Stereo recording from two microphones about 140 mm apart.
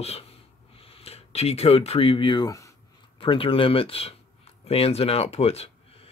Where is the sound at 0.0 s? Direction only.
45° left (ahead or behind); by 2.7 s 25° left (ahead or behind).